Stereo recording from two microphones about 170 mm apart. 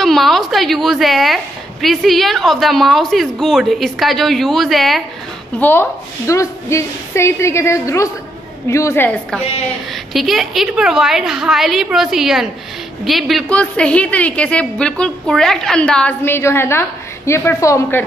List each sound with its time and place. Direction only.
0.0 s a woman's voice: centre (ahead or behind)
5.6 s a woman's voice: 10° left (ahead or behind)
10.1 s a woman's voice: centre (ahead or behind); by 18.0 s 15° left (ahead or behind)